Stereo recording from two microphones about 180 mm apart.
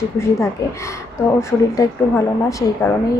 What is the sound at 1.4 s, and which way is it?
A woman's voice, 15° left (ahead or behind).